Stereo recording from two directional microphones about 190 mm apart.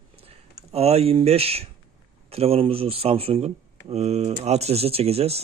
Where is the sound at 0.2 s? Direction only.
30° right (ahead or behind).